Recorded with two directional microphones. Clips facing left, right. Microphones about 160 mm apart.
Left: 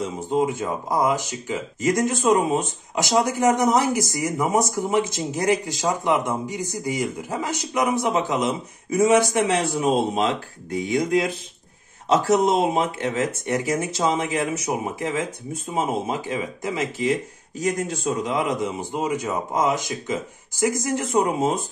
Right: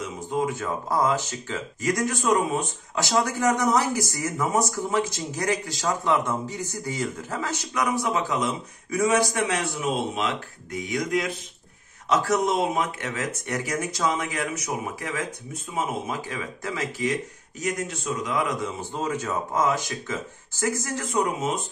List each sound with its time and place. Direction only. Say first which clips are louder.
0.0 s speech: left 4 dB; 25° left (ahead or behind)